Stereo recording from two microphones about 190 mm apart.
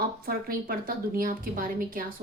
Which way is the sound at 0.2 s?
50° right (ahead or behind).